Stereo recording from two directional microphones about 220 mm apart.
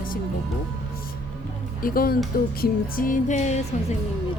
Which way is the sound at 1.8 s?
40° left (ahead or behind).